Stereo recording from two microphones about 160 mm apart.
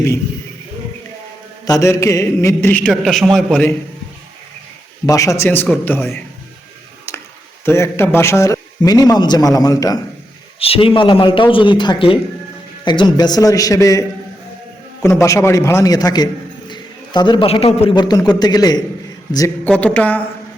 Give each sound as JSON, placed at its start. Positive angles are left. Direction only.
{"t": 1.6, "sound": "a man's voice", "side_deg": 20}
{"t": 5.0, "sound": "a man's voice", "side_deg": 20}
{"t": 7.6, "sound": "a man's voice", "side_deg": 15}
{"t": 10.6, "sound": "a man's voice", "side_deg": 35}
{"t": 15.0, "sound": "a man's voice", "side_deg": 20}
{"t": 17.9, "sound": "a man's voice", "side_deg": 25}
{"t": 19.6, "sound": "a man's voice", "side_deg": 10}